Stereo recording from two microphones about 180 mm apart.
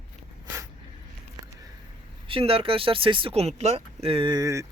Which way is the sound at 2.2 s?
30° right (ahead or behind).